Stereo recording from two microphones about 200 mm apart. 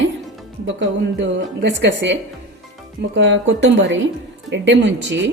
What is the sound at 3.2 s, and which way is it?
A woman's voice, 65° right (ahead or behind).